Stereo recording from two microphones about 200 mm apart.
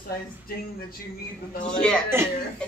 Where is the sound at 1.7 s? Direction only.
5° left (ahead or behind).